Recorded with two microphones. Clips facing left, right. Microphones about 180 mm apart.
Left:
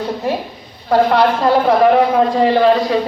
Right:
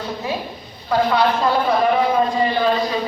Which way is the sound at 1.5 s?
65° left (ahead or behind).